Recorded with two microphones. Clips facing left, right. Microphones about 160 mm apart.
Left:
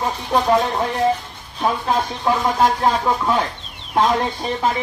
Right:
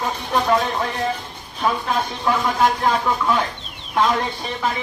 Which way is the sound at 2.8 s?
35° left (ahead or behind).